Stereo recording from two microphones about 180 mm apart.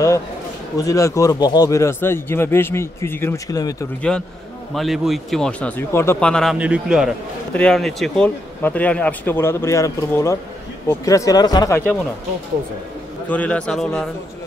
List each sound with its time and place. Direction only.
0.7 s speech: 20° left (ahead or behind)
4.7 s speech: centre (ahead or behind); by 11.8 s 20° left (ahead or behind)
13.3 s speech: 10° left (ahead or behind)